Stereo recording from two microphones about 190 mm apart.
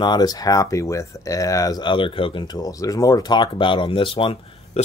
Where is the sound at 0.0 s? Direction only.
20° left (ahead or behind).